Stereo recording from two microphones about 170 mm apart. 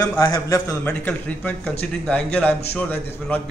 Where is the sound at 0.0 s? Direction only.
15° left (ahead or behind).